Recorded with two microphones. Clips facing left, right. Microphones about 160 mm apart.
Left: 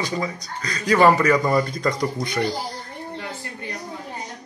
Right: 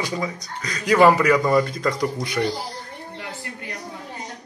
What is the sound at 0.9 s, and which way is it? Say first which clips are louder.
Speech: right 1 dB; 5° right (ahead or behind).